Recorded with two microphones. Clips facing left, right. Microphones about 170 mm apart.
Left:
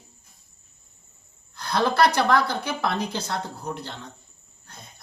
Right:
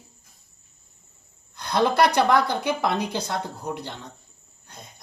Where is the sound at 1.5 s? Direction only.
15° right (ahead or behind).